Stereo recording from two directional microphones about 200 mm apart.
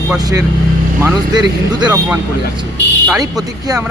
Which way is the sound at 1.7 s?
20° right (ahead or behind).